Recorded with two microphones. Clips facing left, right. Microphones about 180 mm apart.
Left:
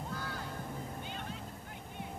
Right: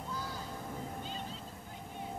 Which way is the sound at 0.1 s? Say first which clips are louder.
Even; 60° left (ahead or behind).